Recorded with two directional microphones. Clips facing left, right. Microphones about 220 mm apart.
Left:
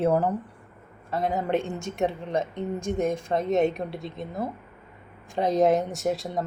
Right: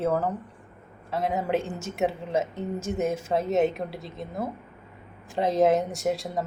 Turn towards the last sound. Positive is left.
turn(degrees=0)  # may be behind; listen again after turning